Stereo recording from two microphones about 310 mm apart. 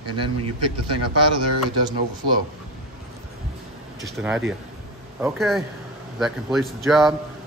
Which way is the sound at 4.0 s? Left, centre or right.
Centre.